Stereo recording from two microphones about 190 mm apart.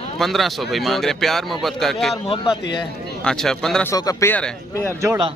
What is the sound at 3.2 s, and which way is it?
Speech, 5° left (ahead or behind).